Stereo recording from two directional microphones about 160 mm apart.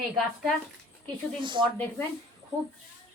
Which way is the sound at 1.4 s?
30° right (ahead or behind).